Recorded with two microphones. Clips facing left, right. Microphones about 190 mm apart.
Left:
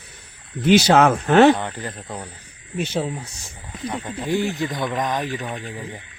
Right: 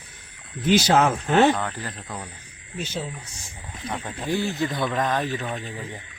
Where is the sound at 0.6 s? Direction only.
75° left (ahead or behind).